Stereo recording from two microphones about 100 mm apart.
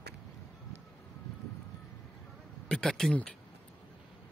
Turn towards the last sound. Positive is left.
turn(degrees=10)  # may be behind; listen again after turning